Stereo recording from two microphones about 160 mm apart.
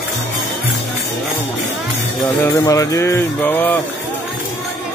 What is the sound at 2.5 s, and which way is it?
Music, 20° left (ahead or behind).